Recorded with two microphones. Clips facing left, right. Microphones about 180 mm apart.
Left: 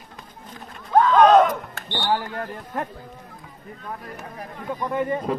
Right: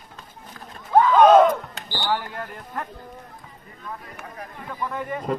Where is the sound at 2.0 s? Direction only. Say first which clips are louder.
Left 2 dB; 25° left (ahead or behind).